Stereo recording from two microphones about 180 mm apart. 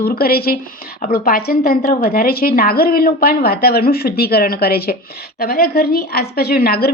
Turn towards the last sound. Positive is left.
turn(degrees=60)  # may be behind; listen again after turning